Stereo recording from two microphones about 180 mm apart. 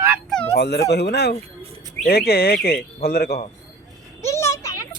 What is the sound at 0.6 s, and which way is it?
Speech, 70° left (ahead or behind).